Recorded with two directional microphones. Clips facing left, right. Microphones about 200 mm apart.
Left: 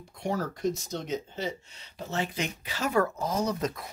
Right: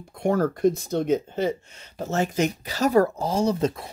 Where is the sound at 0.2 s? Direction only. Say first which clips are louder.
Right 9 dB; 55° right (ahead or behind).